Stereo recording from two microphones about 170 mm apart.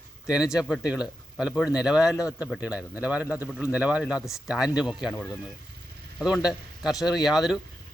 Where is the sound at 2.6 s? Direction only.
5° right (ahead or behind).